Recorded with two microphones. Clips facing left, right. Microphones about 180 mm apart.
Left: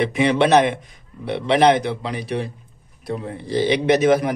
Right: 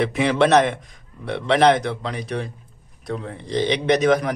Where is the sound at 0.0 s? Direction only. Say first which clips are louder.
Left 1 dB; centre (ahead or behind).